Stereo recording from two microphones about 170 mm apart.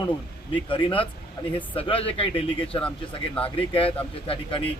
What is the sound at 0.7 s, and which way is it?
Speech, 30° left (ahead or behind).